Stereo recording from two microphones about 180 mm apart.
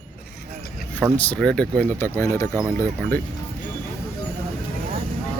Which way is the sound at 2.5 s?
15° right (ahead or behind).